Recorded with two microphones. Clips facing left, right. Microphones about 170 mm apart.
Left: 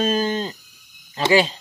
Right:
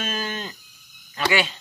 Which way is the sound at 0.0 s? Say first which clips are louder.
Left 9 dB; 30° left (ahead or behind).